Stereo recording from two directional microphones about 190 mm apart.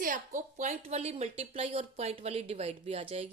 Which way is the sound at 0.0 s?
45° right (ahead or behind).